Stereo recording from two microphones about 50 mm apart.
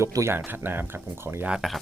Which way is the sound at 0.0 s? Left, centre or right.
Right.